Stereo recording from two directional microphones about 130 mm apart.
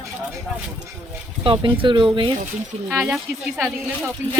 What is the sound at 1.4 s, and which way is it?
Speech, 40° right (ahead or behind).